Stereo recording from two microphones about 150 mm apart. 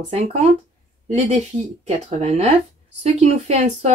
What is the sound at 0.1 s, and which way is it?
Speech, 45° right (ahead or behind).